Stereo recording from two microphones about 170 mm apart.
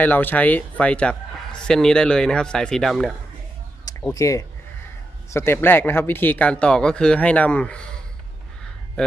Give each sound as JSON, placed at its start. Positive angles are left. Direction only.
{"t": 0.0, "sound": "a man's voice", "side_deg": 10}
{"t": 4.1, "sound": "a man's voice", "side_deg": 20}